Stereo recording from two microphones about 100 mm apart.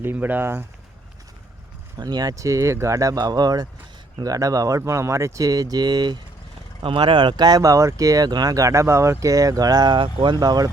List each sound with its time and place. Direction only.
0.0 s speech: 20° right (ahead or behind)
2.0 s speech: 45° right (ahead or behind)
6.8 s speech: 60° right (ahead or behind)
10.4 s speech: 40° right (ahead or behind)